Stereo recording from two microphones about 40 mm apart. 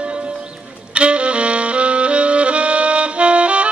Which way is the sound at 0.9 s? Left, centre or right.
Right.